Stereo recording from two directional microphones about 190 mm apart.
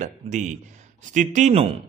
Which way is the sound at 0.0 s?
40° right (ahead or behind).